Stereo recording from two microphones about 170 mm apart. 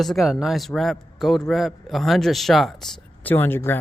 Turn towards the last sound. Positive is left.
turn(degrees=10)  # may be behind; listen again after turning